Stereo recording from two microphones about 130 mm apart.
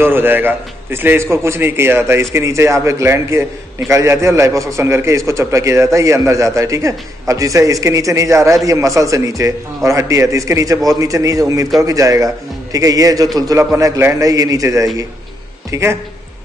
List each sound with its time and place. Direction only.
0.0 s a man's voice: 15° right (ahead or behind)